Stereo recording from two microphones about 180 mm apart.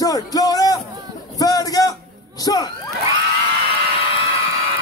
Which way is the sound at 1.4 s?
20° left (ahead or behind).